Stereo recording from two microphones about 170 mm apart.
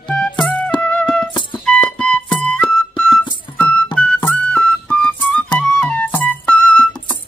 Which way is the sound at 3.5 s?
10° left (ahead or behind).